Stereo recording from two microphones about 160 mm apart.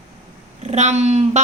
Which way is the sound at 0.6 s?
45° right (ahead or behind).